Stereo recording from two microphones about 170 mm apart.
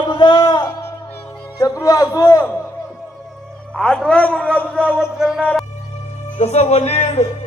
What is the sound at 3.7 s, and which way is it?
A woman's voice, 5° left (ahead or behind).